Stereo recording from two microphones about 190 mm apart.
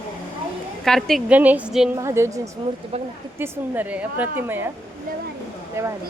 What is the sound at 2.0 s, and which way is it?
Speech, 15° right (ahead or behind).